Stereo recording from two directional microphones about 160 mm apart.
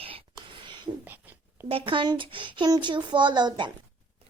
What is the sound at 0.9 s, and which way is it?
Speech, 10° right (ahead or behind).